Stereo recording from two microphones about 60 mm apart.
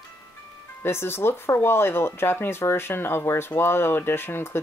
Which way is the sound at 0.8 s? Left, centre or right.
Left.